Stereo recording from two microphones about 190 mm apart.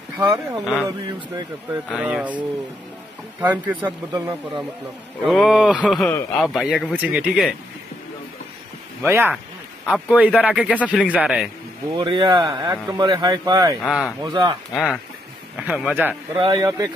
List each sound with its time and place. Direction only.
0.2 s speech: 10° right (ahead or behind)
1.9 s speech: 5° right (ahead or behind)
5.2 s speech: centre (ahead or behind)
9.0 s speech: 10° right (ahead or behind)
11.9 s a man's voice: 25° right (ahead or behind)
13.8 s speech: 5° right (ahead or behind)
14.2 s a man's voice: 25° right (ahead or behind)
14.7 s speech: centre (ahead or behind)
16.3 s a man's voice: 25° right (ahead or behind)